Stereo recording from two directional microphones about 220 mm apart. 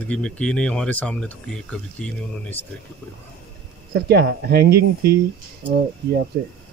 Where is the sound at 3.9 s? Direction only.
45° right (ahead or behind).